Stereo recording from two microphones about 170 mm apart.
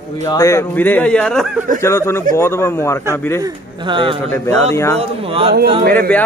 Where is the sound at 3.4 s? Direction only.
30° right (ahead or behind).